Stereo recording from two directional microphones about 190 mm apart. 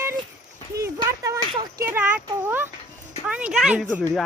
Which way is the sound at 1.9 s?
10° right (ahead or behind).